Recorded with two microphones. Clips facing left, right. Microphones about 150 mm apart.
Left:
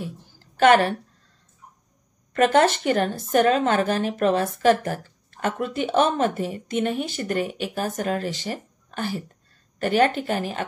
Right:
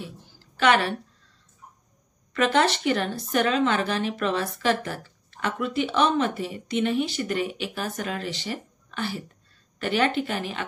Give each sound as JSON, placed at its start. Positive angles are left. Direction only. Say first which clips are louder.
{"t": 0.0, "sound": "a woman's voice", "louder": "left 5 dB", "side_deg": 45}
{"t": 2.3, "sound": "a woman's voice", "louder": "left 4 dB", "side_deg": 45}